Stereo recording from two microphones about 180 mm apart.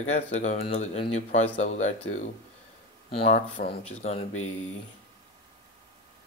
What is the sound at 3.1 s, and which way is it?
Speech, 35° left (ahead or behind).